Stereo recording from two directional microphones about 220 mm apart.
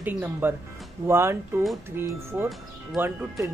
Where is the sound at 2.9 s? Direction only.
10° right (ahead or behind).